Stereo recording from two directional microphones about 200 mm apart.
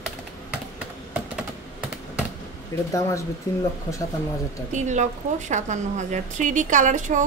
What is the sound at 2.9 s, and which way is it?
Speech, 15° left (ahead or behind).